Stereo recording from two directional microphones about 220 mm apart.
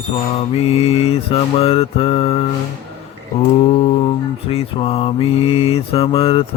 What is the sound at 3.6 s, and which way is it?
Mantra, 25° left (ahead or behind).